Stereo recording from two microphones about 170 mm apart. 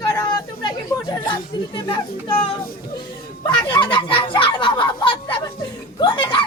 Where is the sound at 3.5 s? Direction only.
30° left (ahead or behind).